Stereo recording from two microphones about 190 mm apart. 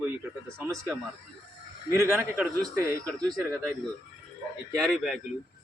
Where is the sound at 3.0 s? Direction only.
Centre (ahead or behind).